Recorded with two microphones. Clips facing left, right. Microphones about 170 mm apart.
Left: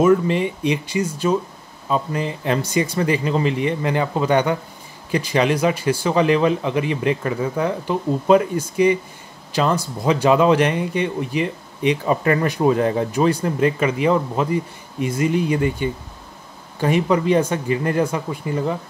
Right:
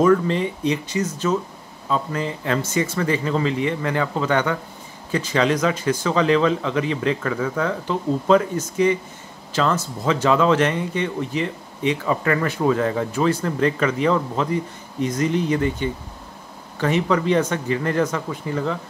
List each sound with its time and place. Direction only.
0.1 s speech: 15° left (ahead or behind)